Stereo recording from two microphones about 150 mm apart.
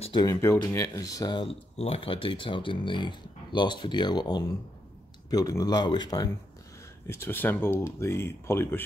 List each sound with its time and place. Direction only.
0.0 s speech: 30° left (ahead or behind)
7.1 s speech: 15° left (ahead or behind)